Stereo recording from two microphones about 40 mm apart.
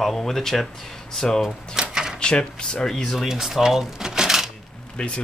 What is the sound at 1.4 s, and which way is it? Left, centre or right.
Speech, centre.